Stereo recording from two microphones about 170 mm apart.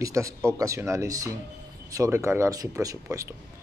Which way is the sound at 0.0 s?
20° right (ahead or behind).